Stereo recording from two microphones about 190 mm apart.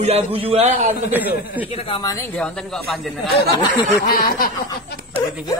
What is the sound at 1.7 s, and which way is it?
Speech, 30° left (ahead or behind).